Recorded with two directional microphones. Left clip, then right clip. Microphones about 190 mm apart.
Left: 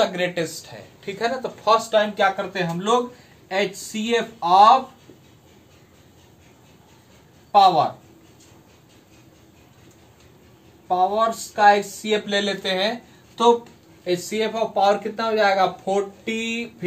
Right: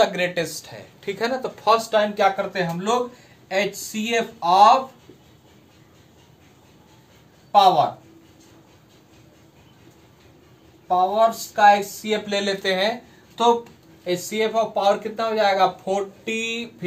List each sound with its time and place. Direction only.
0.0 s speech: 20° right (ahead or behind)
2.1 s speech: 15° right (ahead or behind)
7.5 s speech: 10° right (ahead or behind)
10.9 s speech: 10° right (ahead or behind)
14.0 s speech: 5° right (ahead or behind)